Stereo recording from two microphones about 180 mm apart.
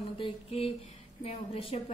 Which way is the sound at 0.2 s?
30° left (ahead or behind).